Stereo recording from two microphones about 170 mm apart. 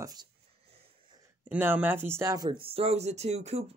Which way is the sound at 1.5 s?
10° right (ahead or behind).